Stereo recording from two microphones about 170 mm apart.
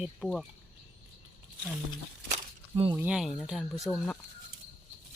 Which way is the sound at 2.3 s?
35° right (ahead or behind).